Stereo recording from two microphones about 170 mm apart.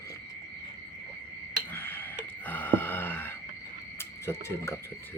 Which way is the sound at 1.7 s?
15° left (ahead or behind).